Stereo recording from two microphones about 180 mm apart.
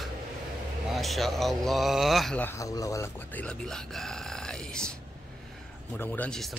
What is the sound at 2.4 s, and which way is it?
Speech, 20° left (ahead or behind).